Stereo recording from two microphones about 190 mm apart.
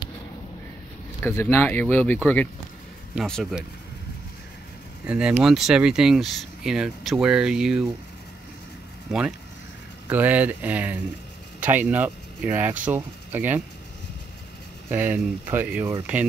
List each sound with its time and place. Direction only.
1.2 s speech: 15° left (ahead or behind)
5.0 s speech: 5° right (ahead or behind)
9.1 s speech: centre (ahead or behind)
14.9 s speech: 10° right (ahead or behind)